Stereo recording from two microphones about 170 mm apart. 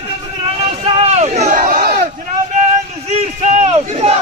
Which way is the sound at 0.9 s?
40° right (ahead or behind).